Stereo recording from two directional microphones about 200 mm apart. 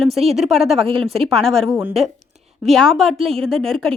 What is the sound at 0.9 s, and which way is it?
Speech, 30° right (ahead or behind).